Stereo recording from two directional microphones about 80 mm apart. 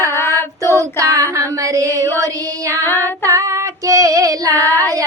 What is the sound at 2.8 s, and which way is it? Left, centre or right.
Female singing, left.